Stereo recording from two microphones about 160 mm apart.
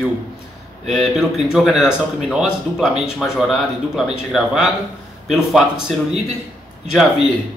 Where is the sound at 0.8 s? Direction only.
Centre (ahead or behind).